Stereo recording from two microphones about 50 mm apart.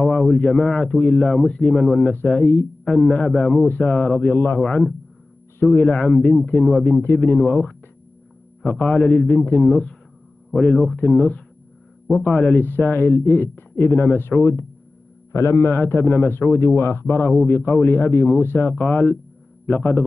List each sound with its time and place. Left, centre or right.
0.0 s a sound: centre
0.7 s a man's voice: left
4.6 s a man's voice: left
5.9 s a man's voice: left
6.8 s a man's voice: left
8.8 s a man's voice: left
9.3 s a man's voice: left
10.5 s a man's voice: centre
10.9 s a man's voice: left
12.5 s a man's voice: left
14.4 s a man's voice: left
15.7 s a man's voice: left